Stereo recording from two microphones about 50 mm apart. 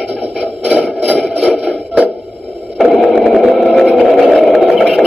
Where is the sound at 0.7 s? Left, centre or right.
Right.